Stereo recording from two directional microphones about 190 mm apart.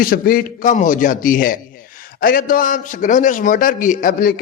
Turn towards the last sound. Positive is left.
turn(degrees=50)  # may be behind; listen again after turning